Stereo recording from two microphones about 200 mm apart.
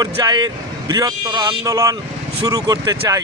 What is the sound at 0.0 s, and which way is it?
A man's voice, 20° right (ahead or behind).